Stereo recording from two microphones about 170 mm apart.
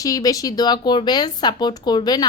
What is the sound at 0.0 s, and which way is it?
A woman's voice, 20° left (ahead or behind).